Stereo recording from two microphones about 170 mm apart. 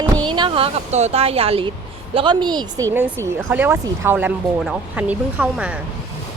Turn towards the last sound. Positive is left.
turn(degrees=-10)  # may be behind; listen again after turning